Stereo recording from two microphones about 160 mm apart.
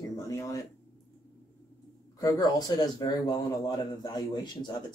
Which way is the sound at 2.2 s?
25° left (ahead or behind).